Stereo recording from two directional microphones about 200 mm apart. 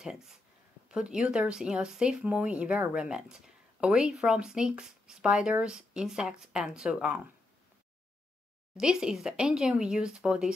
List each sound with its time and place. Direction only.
0.0 s speech: centre (ahead or behind)
8.7 s speech: 5° right (ahead or behind)